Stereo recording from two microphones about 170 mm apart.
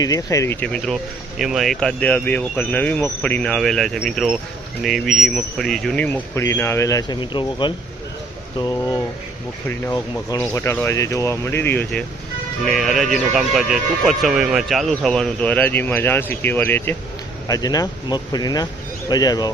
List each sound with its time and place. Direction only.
0.0 s speech: 20° left (ahead or behind)
17.5 s speech: 20° left (ahead or behind)